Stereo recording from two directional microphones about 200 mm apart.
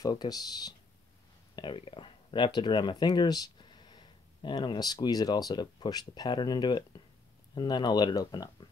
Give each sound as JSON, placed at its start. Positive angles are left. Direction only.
{"t": 0.0, "sound": "speech", "side_deg": 20}